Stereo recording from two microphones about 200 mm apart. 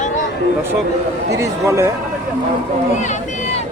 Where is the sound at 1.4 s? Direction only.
15° right (ahead or behind).